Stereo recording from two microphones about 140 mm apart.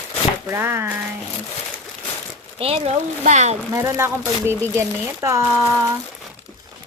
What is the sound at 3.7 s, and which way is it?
Speech, 20° right (ahead or behind).